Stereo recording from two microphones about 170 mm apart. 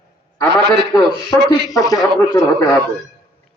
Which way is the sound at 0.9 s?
25° left (ahead or behind).